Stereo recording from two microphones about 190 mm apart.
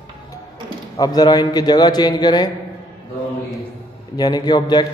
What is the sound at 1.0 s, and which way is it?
A man's voice, 20° left (ahead or behind).